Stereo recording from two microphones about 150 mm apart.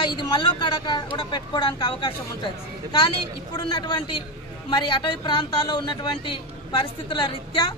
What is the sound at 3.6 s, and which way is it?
A woman's voice, 30° left (ahead or behind).